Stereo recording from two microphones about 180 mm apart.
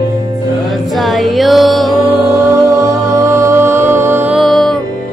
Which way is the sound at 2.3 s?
15° right (ahead or behind).